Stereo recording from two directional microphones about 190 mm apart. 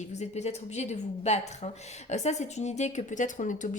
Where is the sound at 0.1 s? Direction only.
35° left (ahead or behind).